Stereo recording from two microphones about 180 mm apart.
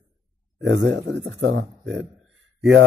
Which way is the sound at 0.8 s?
75° right (ahead or behind).